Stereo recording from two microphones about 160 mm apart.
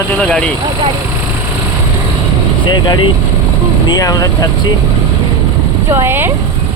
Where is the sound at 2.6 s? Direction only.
30° left (ahead or behind).